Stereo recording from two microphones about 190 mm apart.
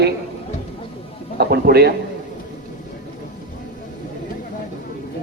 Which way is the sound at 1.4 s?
55° right (ahead or behind).